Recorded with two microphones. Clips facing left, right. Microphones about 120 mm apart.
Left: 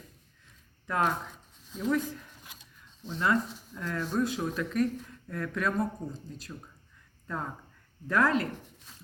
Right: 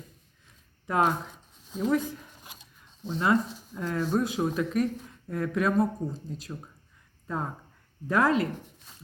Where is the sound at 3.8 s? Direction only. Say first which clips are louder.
Right 3 dB; 15° right (ahead or behind).